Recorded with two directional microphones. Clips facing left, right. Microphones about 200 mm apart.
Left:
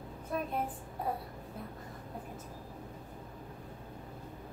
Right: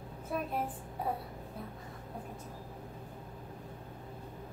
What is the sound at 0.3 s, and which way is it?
Speech, centre (ahead or behind).